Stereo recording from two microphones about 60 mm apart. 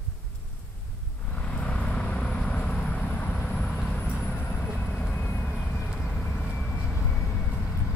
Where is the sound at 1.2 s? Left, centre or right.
Left.